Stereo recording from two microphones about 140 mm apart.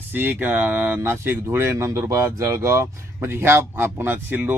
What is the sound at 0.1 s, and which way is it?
Speech, 15° right (ahead or behind).